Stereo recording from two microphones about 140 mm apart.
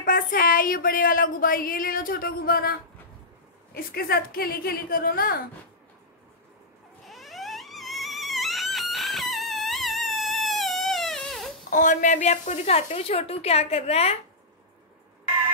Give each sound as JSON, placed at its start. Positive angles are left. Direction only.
{"t": 0.0, "sound": "speech", "side_deg": 90}
{"t": 7.1, "sound": "a sound", "side_deg": 0}
{"t": 11.7, "sound": "a woman's voice", "side_deg": 65}